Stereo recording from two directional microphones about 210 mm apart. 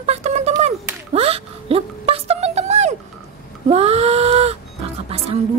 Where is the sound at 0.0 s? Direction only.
30° right (ahead or behind).